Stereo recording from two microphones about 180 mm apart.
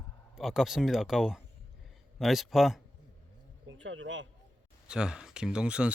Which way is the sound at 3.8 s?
90° right.